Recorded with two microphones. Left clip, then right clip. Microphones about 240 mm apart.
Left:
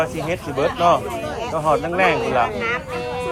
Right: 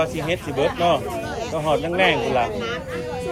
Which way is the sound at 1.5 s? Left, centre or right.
Centre.